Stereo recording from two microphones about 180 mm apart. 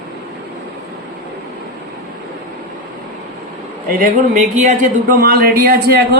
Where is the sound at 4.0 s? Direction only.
40° right (ahead or behind).